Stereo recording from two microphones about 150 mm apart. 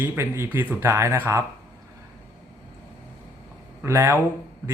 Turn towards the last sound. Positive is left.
turn(degrees=-15)  # may be behind; listen again after turning